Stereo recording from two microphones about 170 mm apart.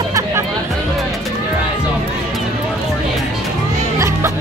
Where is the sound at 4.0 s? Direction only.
15° right (ahead or behind).